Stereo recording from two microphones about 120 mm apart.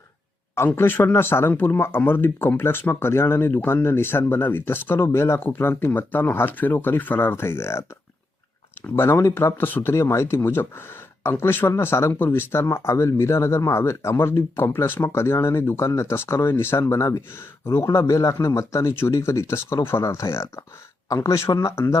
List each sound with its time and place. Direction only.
0.8 s speech: 15° left (ahead or behind)
9.0 s speech: 20° left (ahead or behind)